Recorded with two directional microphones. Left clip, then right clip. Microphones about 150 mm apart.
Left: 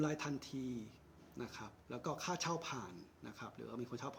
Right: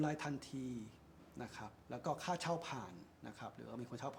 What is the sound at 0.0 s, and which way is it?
A man's voice, 15° right (ahead or behind).